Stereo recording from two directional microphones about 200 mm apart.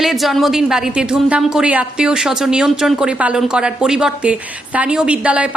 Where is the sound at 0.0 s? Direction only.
Centre (ahead or behind).